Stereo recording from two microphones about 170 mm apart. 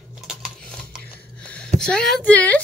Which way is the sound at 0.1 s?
Centre (ahead or behind).